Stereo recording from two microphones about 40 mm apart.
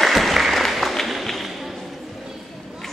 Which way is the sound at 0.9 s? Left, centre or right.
Centre.